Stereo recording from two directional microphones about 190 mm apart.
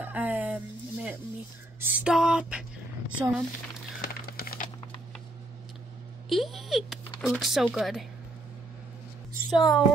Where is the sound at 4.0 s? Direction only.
50° left (ahead or behind).